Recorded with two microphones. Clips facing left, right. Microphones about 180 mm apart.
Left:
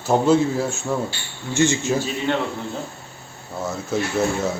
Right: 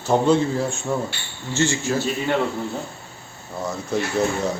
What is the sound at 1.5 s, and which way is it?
Speech, 20° left (ahead or behind).